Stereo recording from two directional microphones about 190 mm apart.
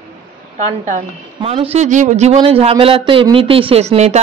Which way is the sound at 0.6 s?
40° right (ahead or behind).